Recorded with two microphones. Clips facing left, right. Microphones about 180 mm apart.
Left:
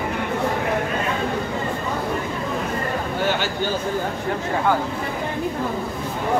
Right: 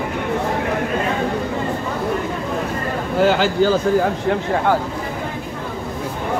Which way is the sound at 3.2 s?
90° right.